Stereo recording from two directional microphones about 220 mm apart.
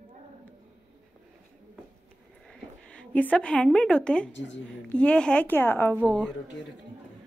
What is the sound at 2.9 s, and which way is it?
A woman's voice, 5° left (ahead or behind).